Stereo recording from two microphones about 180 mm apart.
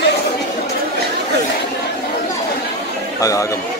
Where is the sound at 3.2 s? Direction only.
20° left (ahead or behind).